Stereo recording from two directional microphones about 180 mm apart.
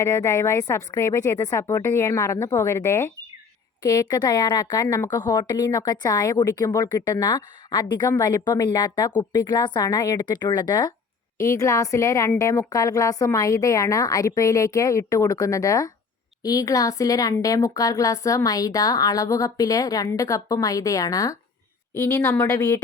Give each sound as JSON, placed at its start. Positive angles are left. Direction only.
{"t": 0.0, "sound": "a woman's voice", "side_deg": 15}